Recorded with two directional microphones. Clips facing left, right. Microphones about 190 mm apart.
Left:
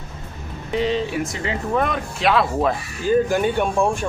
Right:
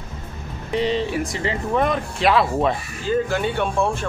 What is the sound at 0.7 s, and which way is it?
Speech, centre (ahead or behind).